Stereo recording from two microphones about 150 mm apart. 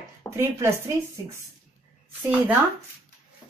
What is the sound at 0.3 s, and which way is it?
Speech, 20° right (ahead or behind).